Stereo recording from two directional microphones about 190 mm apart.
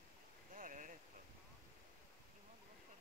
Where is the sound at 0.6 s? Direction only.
45° right (ahead or behind).